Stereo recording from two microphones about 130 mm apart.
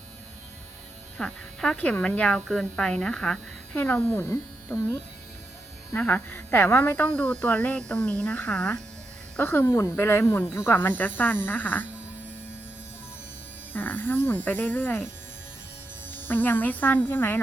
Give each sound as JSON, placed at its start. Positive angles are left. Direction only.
{"t": 1.2, "sound": "speech", "side_deg": 5}
{"t": 3.8, "sound": "speech", "side_deg": 15}
{"t": 13.7, "sound": "speech", "side_deg": 15}